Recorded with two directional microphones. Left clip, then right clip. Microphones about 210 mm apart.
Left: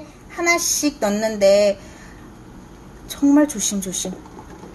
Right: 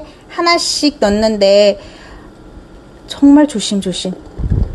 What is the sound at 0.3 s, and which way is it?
Speech, 35° right (ahead or behind).